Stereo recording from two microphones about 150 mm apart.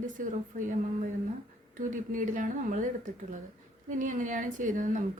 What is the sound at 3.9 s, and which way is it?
A woman's voice, 60° right (ahead or behind).